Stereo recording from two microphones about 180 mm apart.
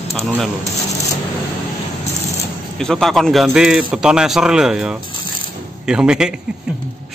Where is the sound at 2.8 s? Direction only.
5° left (ahead or behind).